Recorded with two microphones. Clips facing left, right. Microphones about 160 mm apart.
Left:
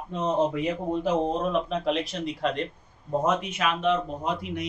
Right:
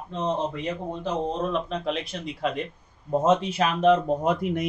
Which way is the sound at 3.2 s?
25° right (ahead or behind).